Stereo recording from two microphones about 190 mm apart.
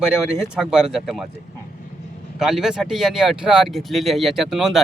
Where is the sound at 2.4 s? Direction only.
5° right (ahead or behind).